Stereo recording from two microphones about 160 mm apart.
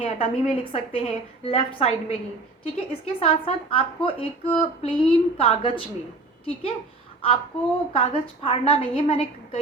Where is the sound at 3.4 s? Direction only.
35° left (ahead or behind).